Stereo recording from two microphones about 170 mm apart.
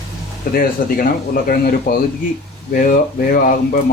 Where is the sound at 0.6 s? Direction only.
60° left (ahead or behind).